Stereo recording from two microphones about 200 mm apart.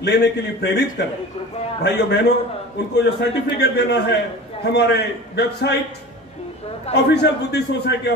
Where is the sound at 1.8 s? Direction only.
55° left (ahead or behind).